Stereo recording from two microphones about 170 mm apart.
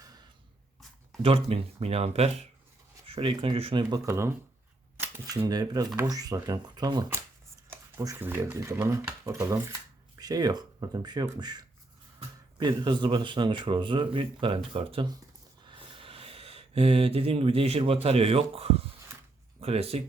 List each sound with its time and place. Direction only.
1.2 s speech: 35° right (ahead or behind)